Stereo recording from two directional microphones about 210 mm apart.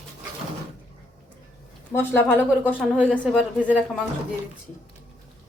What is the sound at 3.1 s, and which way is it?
Speech, centre (ahead or behind).